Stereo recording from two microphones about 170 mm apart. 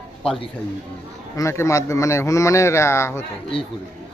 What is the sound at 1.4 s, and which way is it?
Speech, 15° left (ahead or behind).